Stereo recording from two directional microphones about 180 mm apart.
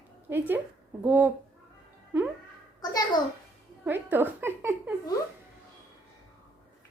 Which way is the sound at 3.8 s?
10° right (ahead or behind).